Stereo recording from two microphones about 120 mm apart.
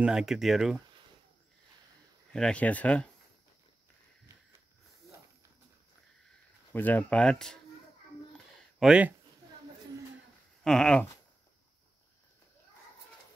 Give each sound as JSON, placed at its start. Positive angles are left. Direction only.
{"t": 0.0, "sound": "speech", "side_deg": -5}
{"t": 2.3, "sound": "speech", "side_deg": 10}
{"t": 6.7, "sound": "speech", "side_deg": 15}
{"t": 8.7, "sound": "speech", "side_deg": -5}
{"t": 10.6, "sound": "speech", "side_deg": 5}